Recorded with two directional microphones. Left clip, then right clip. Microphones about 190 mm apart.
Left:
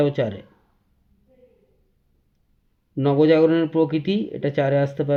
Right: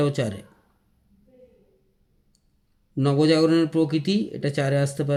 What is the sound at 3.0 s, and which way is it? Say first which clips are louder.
Speech: left 4 dB; 15° right (ahead or behind).